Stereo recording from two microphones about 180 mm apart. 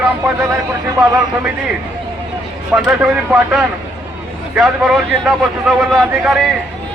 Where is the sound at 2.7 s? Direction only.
5° right (ahead or behind).